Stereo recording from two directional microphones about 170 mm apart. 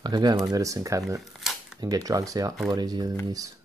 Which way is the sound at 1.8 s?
20° right (ahead or behind).